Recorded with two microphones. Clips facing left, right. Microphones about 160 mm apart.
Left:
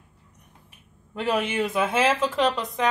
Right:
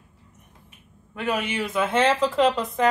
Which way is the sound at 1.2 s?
30° left (ahead or behind).